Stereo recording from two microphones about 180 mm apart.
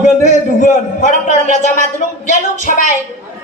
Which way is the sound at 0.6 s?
45° left (ahead or behind).